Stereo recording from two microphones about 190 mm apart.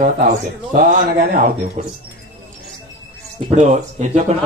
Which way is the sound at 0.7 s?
45° right (ahead or behind).